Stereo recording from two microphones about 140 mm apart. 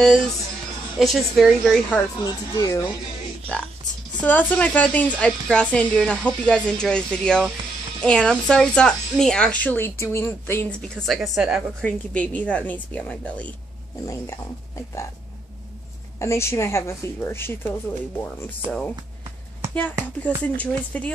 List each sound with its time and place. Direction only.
0.9 s a woman's voice: centre (ahead or behind)
2.2 s a woman's voice: 25° left (ahead or behind)
4.2 s a woman's voice: 10° left (ahead or behind)
11.0 s a woman's voice: centre (ahead or behind)
14.0 s a woman's voice: 20° left (ahead or behind)
16.2 s a woman's voice: 20° left (ahead or behind)